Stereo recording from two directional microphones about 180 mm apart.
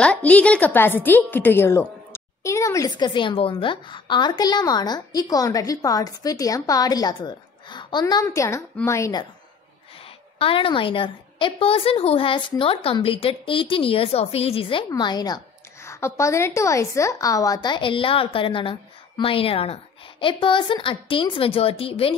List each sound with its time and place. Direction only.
0.0 s a woman's voice: 5° left (ahead or behind)
10.0 s a woman's voice: 30° left (ahead or behind)